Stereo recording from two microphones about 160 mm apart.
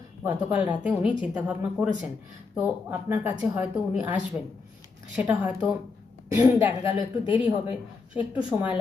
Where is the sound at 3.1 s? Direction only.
10° right (ahead or behind).